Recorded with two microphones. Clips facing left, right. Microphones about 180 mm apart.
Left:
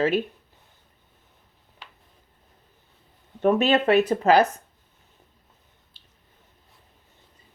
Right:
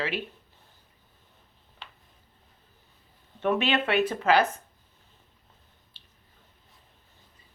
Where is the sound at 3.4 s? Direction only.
40° left (ahead or behind).